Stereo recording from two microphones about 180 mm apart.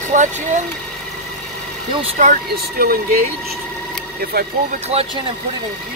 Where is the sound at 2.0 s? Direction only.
45° right (ahead or behind).